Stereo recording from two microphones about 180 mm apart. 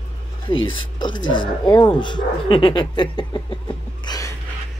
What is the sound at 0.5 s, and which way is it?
Speech, 90° left.